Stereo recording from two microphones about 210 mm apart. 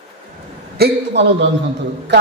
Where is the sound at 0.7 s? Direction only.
50° right (ahead or behind).